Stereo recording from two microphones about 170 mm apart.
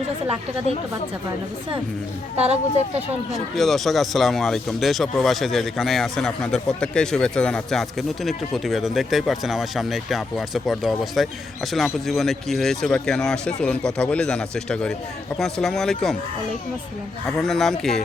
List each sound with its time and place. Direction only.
2.3 s a woman's voice: 40° right (ahead or behind)
3.3 s speech: centre (ahead or behind)
17.2 s speech: centre (ahead or behind)